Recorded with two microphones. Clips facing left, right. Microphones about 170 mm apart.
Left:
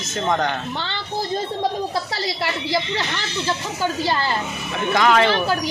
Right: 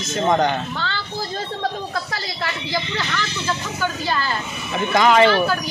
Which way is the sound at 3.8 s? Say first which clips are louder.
Left 3 dB; 30° left (ahead or behind).